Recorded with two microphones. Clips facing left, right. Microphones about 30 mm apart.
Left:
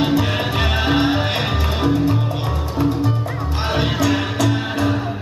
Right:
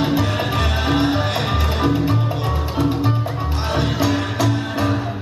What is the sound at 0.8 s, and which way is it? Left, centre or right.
Music, centre.